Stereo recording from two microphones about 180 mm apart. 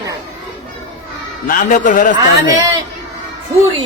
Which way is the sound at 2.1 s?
20° right (ahead or behind).